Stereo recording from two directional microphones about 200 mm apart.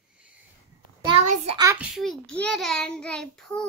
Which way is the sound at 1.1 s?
30° right (ahead or behind).